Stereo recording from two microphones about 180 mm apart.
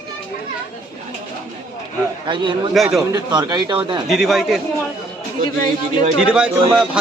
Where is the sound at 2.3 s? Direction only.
25° right (ahead or behind).